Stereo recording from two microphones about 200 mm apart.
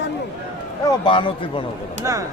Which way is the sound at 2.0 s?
15° right (ahead or behind).